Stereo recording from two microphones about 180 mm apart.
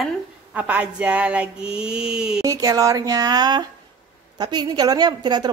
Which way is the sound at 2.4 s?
20° right (ahead or behind).